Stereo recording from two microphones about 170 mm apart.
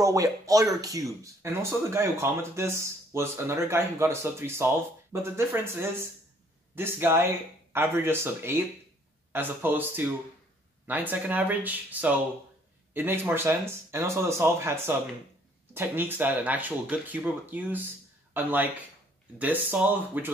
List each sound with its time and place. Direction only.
0.0 s speech: 20° right (ahead or behind)